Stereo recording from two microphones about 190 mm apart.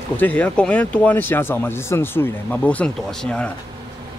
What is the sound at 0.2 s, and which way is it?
Speech, 10° left (ahead or behind).